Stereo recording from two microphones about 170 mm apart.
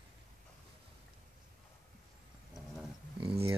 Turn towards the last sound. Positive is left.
turn(degrees=-30)  # may be behind; listen again after turning